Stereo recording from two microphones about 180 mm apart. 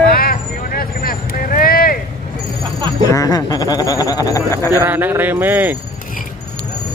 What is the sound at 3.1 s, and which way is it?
Speech, 20° left (ahead or behind).